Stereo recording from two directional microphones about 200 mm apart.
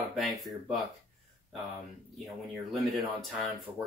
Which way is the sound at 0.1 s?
Centre (ahead or behind).